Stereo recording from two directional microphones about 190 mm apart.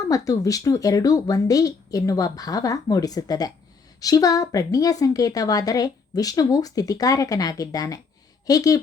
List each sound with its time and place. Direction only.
0.1 s a woman's voice: 20° left (ahead or behind)